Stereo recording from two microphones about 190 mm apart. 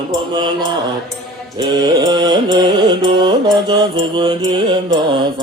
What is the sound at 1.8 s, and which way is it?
Music, 20° right (ahead or behind).